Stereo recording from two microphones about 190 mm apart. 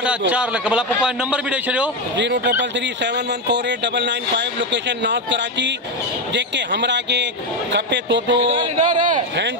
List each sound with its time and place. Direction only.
0.3 s a man's voice: 5° right (ahead or behind)
2.1 s a man's voice: 65° right (ahead or behind)
8.5 s a sound: 40° right (ahead or behind)